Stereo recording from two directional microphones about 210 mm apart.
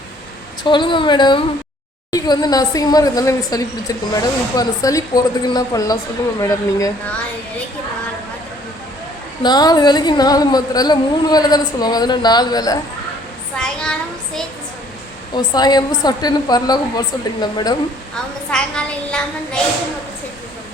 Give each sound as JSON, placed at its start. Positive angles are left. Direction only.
{"t": 0.6, "sound": "a woman's voice", "side_deg": 20}
{"t": 9.4, "sound": "a woman's voice", "side_deg": 20}
{"t": 13.6, "sound": "a sound", "side_deg": 5}
{"t": 15.4, "sound": "a woman's voice", "side_deg": 20}
{"t": 18.5, "sound": "a woman's voice", "side_deg": 5}